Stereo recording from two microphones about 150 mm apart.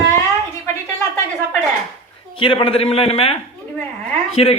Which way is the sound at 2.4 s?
35° left (ahead or behind).